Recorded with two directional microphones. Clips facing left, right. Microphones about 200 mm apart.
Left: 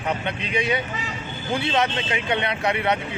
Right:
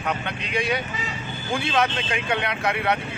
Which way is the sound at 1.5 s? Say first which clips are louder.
Left 1 dB; 20° left (ahead or behind).